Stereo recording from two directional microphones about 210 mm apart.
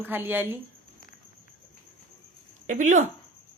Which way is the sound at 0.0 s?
10° right (ahead or behind).